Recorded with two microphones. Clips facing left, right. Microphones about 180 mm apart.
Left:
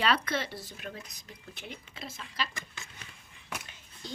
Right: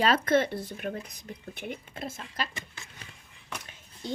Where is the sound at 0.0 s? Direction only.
45° right (ahead or behind).